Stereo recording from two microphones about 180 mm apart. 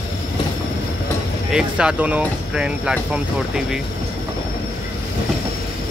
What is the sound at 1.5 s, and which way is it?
Speech, 5° right (ahead or behind).